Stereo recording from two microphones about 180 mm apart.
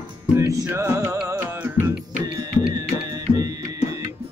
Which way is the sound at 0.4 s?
20° right (ahead or behind).